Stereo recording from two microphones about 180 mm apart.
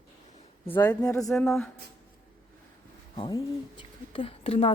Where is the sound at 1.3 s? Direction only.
Centre (ahead or behind).